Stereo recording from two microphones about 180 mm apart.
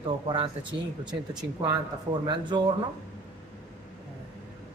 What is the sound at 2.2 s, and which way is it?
Speech, 25° right (ahead or behind).